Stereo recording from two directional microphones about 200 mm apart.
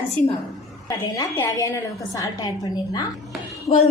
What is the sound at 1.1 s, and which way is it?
A woman's voice, 15° left (ahead or behind).